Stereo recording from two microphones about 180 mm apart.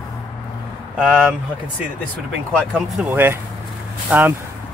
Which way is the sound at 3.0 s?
10° right (ahead or behind).